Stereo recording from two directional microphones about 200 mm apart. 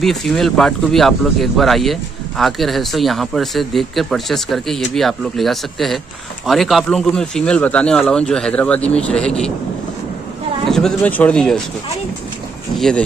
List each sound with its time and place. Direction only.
0.0 s speech: centre (ahead or behind)
10.7 s speech: 5° left (ahead or behind)
12.7 s speech: centre (ahead or behind)